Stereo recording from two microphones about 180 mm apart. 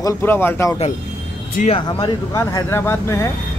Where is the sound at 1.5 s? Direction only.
35° left (ahead or behind).